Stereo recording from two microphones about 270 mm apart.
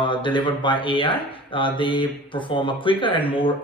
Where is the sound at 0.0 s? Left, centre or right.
Centre.